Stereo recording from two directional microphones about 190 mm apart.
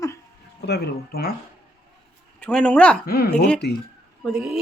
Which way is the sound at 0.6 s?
60° left (ahead or behind).